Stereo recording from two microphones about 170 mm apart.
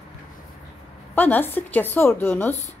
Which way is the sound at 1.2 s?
10° left (ahead or behind).